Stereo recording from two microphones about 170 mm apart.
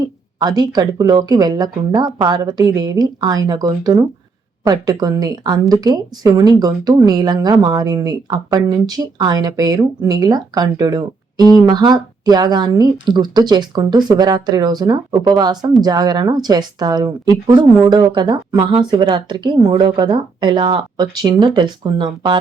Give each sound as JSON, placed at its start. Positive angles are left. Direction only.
{"t": 0.3, "sound": "speech", "side_deg": -25}